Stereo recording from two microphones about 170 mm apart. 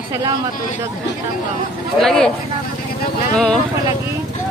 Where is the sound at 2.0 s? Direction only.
5° left (ahead or behind).